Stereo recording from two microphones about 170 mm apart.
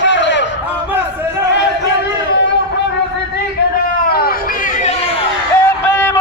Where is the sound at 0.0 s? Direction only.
90° left.